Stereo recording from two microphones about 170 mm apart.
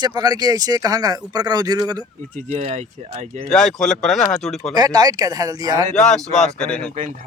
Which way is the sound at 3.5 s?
5° left (ahead or behind).